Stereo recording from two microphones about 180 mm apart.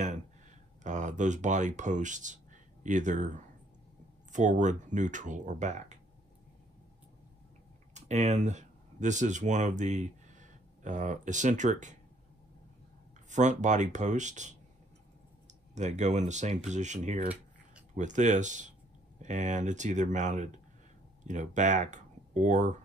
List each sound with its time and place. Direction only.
0.8 s speech: 40° right (ahead or behind)
7.9 s speech: 40° right (ahead or behind)
13.3 s speech: 40° right (ahead or behind)